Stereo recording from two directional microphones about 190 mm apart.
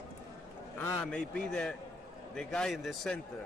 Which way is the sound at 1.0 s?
5° left (ahead or behind).